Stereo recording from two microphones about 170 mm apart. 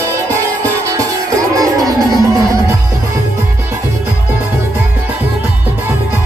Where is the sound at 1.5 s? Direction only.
20° right (ahead or behind).